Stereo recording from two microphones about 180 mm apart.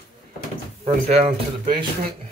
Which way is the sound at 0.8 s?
35° right (ahead or behind).